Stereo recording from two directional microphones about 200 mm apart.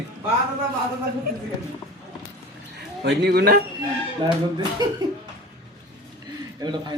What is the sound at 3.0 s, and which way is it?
Speech, 55° right (ahead or behind).